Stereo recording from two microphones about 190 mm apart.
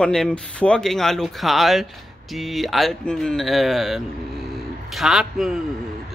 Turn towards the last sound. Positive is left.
turn(degrees=0)  # may be behind; listen again after turning